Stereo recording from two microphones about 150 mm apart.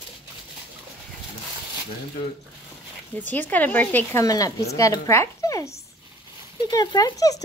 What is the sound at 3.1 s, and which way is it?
Speech, 10° left (ahead or behind).